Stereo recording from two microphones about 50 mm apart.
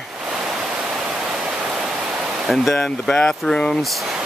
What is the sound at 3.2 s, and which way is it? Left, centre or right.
Speech, centre.